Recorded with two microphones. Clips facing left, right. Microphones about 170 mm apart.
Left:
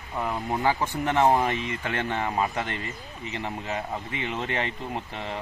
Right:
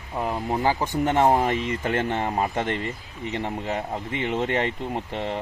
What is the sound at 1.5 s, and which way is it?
Speech, 45° right (ahead or behind).